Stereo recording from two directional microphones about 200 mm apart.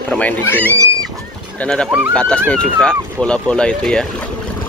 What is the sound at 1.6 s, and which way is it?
Speech, 5° left (ahead or behind).